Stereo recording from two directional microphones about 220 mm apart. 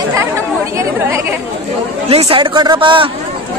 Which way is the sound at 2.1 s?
25° right (ahead or behind).